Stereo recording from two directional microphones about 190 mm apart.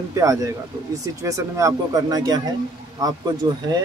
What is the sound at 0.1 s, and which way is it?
Speech, 15° right (ahead or behind).